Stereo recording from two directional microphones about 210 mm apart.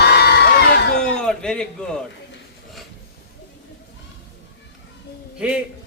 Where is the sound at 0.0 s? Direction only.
50° left (ahead or behind).